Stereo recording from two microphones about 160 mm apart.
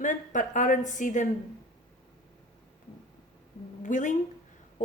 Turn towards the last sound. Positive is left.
turn(degrees=50)  # may be behind; listen again after turning